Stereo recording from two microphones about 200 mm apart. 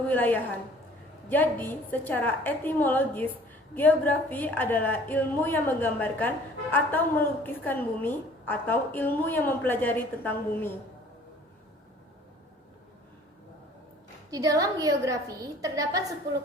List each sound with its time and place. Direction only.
0.1 s a woman's voice: 10° left (ahead or behind)
14.3 s a woman's voice: 15° right (ahead or behind)